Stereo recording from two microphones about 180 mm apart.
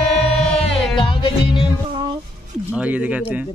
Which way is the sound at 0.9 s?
30° left (ahead or behind).